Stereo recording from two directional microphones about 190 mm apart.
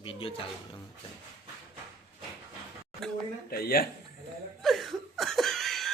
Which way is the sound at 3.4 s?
50° left (ahead or behind).